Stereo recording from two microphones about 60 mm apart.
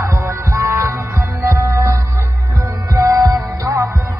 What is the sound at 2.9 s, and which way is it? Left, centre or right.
Music, right.